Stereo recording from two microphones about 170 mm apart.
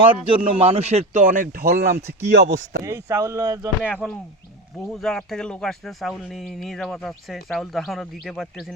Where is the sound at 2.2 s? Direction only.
85° right.